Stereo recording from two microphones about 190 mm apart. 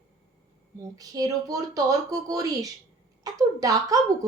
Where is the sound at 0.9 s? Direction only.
20° right (ahead or behind).